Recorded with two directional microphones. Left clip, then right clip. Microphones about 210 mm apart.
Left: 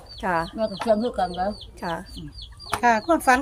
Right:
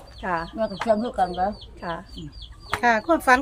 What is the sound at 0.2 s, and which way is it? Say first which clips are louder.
Speech: left 3 dB; 50° left (ahead or behind).